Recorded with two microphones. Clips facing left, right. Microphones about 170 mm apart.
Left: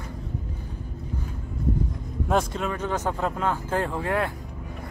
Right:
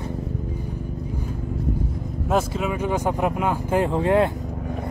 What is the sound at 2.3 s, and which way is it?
Speech, 5° right (ahead or behind).